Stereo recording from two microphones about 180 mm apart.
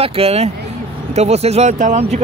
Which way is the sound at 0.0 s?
35° right (ahead or behind).